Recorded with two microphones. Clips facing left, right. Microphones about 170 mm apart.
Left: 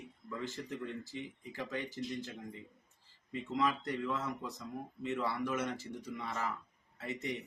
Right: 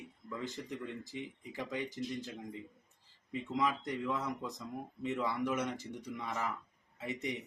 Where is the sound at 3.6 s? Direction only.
15° right (ahead or behind).